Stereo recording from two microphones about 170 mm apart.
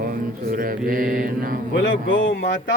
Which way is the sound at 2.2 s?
80° left.